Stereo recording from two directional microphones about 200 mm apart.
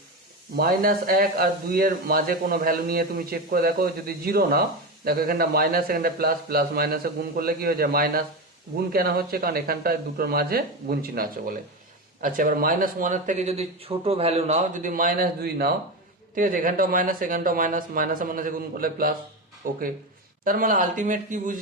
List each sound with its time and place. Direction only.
0.5 s speech: 45° right (ahead or behind)